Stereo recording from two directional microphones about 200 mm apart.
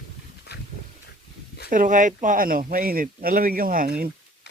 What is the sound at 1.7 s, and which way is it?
Speech, 40° right (ahead or behind).